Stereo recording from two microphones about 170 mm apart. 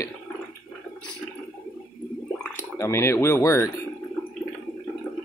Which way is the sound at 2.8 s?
15° left (ahead or behind).